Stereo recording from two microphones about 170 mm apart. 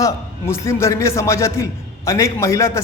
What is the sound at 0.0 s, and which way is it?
A man's voice, 15° left (ahead or behind).